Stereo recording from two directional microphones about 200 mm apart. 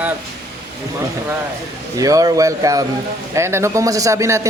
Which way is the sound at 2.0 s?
15° right (ahead or behind).